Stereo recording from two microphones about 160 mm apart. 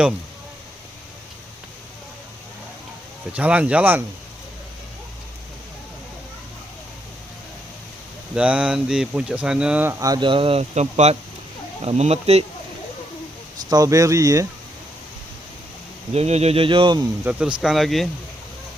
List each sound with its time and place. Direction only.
3.3 s speech: 10° right (ahead or behind)
8.4 s speech: 10° right (ahead or behind)
10.0 s speech: 25° right (ahead or behind)
13.7 s speech: 20° right (ahead or behind)
16.1 s speech: 40° right (ahead or behind)
17.3 s speech: 10° right (ahead or behind)